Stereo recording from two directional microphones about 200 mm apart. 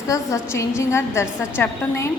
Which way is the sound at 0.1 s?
15° left (ahead or behind).